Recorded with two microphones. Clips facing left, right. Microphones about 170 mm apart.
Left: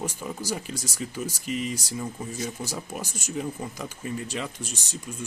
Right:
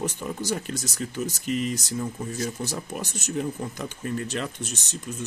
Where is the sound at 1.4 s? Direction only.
50° right (ahead or behind).